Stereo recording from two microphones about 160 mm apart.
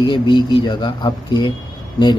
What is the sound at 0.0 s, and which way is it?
A man's voice, 30° left (ahead or behind).